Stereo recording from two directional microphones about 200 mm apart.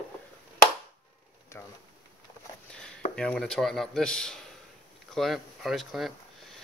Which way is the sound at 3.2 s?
5° left (ahead or behind).